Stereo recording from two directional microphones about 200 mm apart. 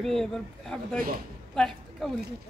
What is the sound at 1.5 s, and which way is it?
Speech, 5° left (ahead or behind).